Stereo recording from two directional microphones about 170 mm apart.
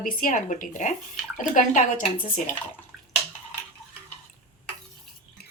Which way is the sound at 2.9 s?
Centre (ahead or behind).